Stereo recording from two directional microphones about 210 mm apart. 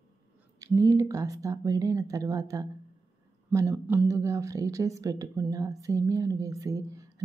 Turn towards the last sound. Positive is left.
turn(degrees=-15)  # may be behind; listen again after turning